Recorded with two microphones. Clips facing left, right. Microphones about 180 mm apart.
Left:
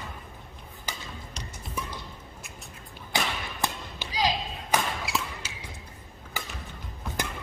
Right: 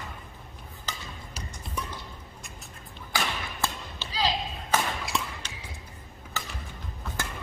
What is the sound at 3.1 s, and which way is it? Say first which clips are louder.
Thump: left 1 dB; 15° left (ahead or behind).